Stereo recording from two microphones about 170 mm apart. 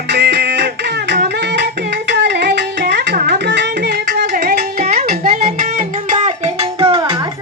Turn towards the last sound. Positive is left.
turn(degrees=-30)  # may be behind; listen again after turning